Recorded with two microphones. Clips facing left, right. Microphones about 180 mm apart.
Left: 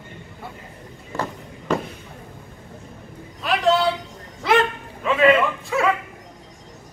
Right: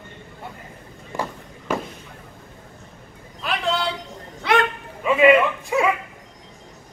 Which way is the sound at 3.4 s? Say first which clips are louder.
Left 5 dB; centre (ahead or behind).